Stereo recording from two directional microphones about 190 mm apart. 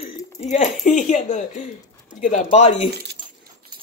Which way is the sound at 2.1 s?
40° left (ahead or behind).